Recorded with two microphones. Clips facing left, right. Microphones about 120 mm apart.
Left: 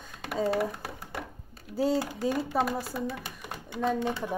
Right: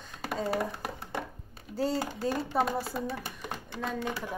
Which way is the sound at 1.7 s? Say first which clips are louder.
Left 3 dB; 10° left (ahead or behind).